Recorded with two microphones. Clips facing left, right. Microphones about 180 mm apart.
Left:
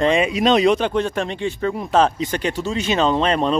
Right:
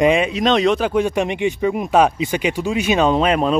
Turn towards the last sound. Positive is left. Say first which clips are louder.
# right 2 dB
turn(degrees=-5)  # may be behind; listen again after turning